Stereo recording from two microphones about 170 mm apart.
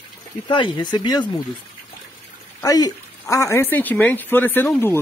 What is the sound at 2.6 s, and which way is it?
Speech, 20° left (ahead or behind).